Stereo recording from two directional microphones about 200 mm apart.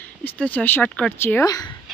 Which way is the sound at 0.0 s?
10° left (ahead or behind).